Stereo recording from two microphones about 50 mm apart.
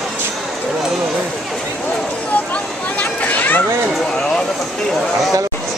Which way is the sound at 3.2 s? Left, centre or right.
Left.